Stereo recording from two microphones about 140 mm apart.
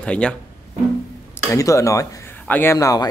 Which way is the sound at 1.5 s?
20° left (ahead or behind).